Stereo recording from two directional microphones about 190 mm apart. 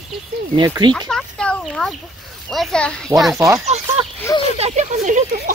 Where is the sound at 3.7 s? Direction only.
35° right (ahead or behind).